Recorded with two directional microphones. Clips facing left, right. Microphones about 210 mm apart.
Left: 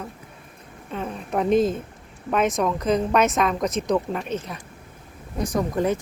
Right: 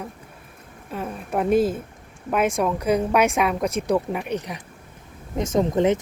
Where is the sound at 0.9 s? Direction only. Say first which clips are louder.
Even; 5° right (ahead or behind).